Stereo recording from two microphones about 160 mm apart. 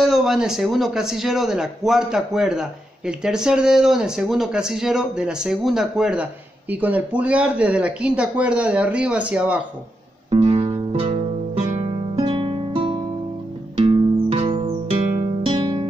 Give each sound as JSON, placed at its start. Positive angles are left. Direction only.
{"t": 0.0, "sound": "a man's voice", "side_deg": 0}
{"t": 10.3, "sound": "music", "side_deg": -35}